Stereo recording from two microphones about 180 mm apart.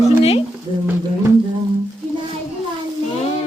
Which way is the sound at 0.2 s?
35° left (ahead or behind).